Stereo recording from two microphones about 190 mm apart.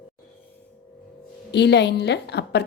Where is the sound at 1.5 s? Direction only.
65° left (ahead or behind).